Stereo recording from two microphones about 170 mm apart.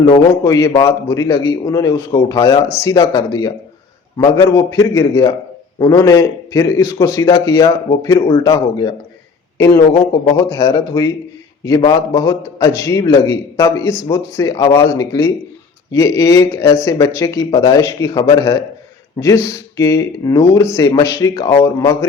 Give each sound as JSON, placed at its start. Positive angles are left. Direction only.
{"t": 0.3, "sound": "a man's voice", "side_deg": 20}
{"t": 10.3, "sound": "a man's voice", "side_deg": 15}